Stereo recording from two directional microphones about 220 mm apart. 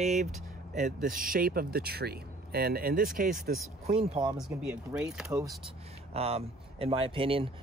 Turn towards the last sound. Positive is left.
turn(degrees=-25)  # may be behind; listen again after turning